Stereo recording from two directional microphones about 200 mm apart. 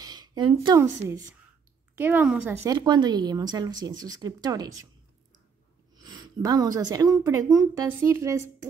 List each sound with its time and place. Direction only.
0.0 s speech: 20° right (ahead or behind)
5.9 s speech: 20° right (ahead or behind)